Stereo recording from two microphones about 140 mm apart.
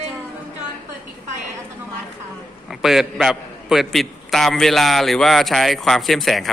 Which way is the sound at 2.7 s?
5° right (ahead or behind).